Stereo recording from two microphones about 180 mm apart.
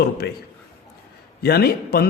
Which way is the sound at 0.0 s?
60° left (ahead or behind).